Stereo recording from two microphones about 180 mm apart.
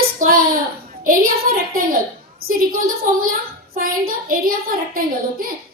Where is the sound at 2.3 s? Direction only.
55° right (ahead or behind).